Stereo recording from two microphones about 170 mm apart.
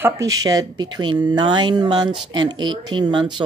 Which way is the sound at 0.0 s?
20° right (ahead or behind).